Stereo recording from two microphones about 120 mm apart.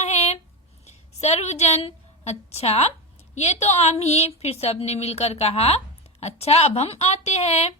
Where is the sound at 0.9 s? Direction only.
65° left (ahead or behind).